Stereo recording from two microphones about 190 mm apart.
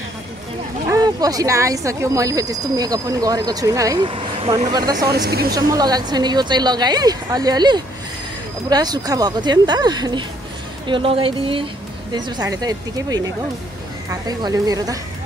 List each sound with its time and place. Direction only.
0.9 s speech: 20° right (ahead or behind)
4.9 s speech: 55° right (ahead or behind)
5.5 s speech: 20° right (ahead or behind)
14.2 s speech: 20° right (ahead or behind)